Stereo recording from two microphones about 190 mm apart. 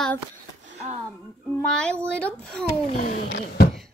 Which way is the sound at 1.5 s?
5° left (ahead or behind).